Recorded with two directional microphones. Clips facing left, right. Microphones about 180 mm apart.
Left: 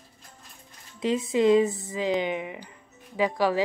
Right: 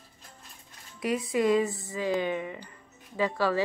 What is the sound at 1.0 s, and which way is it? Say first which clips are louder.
A woman's voice: left 4 dB; 25° left (ahead or behind).